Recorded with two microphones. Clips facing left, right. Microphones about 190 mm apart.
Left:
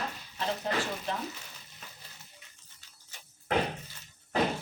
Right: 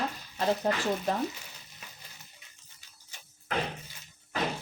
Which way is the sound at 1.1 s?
40° right (ahead or behind).